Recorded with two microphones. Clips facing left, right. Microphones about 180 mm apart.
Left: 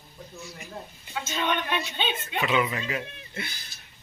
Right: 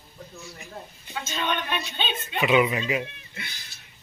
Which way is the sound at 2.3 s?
15° right (ahead or behind).